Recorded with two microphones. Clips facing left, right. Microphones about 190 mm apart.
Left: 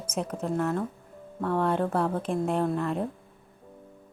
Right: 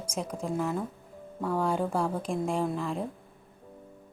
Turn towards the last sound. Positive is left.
turn(degrees=5)  # may be behind; listen again after turning